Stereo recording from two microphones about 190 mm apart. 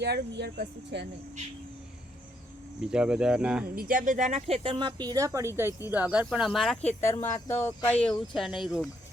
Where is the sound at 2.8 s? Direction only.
5° right (ahead or behind).